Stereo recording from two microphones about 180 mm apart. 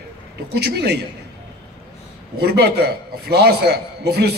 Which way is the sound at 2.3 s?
60° right (ahead or behind).